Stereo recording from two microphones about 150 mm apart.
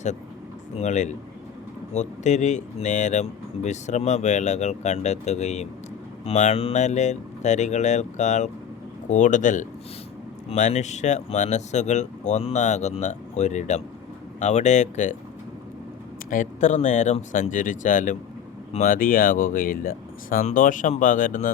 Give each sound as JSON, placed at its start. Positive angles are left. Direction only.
{"t": 0.8, "sound": "speech", "side_deg": 50}
{"t": 16.3, "sound": "speech", "side_deg": 55}